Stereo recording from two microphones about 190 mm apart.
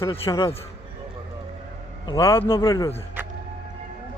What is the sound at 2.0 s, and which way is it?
Speech, 15° left (ahead or behind).